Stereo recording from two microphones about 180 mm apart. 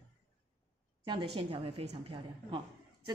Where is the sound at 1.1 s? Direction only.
30° right (ahead or behind).